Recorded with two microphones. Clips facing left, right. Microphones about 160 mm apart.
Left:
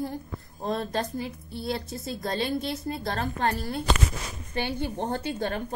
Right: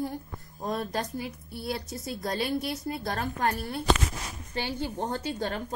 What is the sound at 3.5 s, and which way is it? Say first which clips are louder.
Speech: left 2 dB; 30° left (ahead or behind).